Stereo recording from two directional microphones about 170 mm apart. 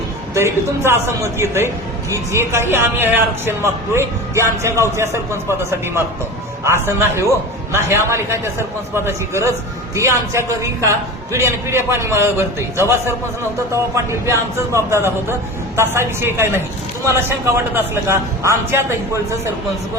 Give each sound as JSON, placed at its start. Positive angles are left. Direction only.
{"t": 0.3, "sound": "a man's voice", "side_deg": -15}